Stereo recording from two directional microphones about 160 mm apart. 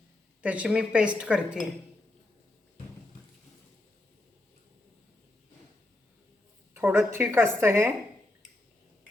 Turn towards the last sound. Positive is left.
turn(degrees=-15)  # may be behind; listen again after turning